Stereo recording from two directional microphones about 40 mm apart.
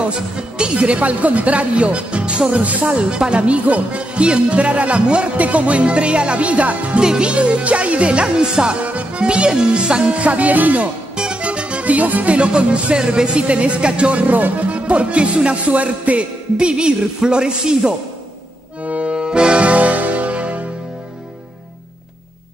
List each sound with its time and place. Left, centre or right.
0.0 s speech: right
7.0 s speech: right
11.1 s music: right
12.4 s speech: right
16.5 s speech: right
18.9 s music: right